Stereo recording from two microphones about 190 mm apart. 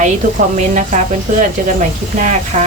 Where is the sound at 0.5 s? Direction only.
40° right (ahead or behind).